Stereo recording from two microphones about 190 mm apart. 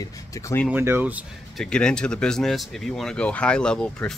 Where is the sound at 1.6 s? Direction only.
5° left (ahead or behind).